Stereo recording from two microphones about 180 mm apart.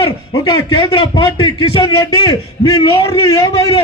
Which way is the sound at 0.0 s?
30° left (ahead or behind).